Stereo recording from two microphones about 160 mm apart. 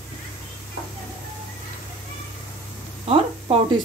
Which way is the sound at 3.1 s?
40° right (ahead or behind).